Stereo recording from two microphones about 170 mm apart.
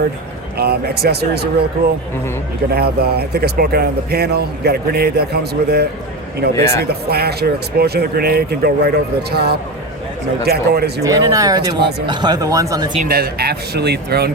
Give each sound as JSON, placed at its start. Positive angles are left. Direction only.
{"t": 0.5, "sound": "speech", "side_deg": -70}
{"t": 2.6, "sound": "speech", "side_deg": -65}
{"t": 6.6, "sound": "speech", "side_deg": 15}
{"t": 6.8, "sound": "speech", "side_deg": -70}
{"t": 11.0, "sound": "speech", "side_deg": -20}
{"t": 13.0, "sound": "speech", "side_deg": -60}